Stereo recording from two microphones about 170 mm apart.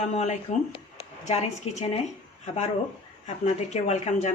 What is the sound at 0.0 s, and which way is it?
Speech, 45° left (ahead or behind).